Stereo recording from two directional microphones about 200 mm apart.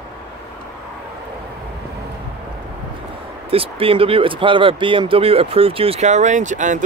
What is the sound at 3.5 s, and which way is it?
Speech, 30° right (ahead or behind).